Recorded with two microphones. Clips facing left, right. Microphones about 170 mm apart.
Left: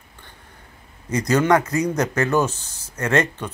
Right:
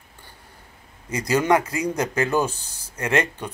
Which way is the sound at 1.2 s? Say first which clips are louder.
Left 2 dB; 10° right (ahead or behind).